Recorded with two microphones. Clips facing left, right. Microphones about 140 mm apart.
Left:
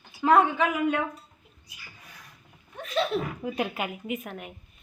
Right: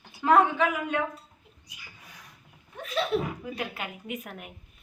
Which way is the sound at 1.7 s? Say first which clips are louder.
Even; 20° right (ahead or behind).